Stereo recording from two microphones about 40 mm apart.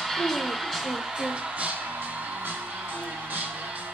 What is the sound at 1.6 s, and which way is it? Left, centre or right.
Music, right.